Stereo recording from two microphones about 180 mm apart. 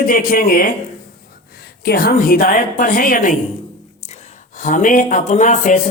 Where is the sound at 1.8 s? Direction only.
55° left (ahead or behind).